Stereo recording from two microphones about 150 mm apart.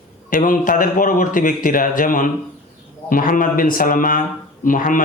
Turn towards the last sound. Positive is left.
turn(degrees=65)  # may be behind; listen again after turning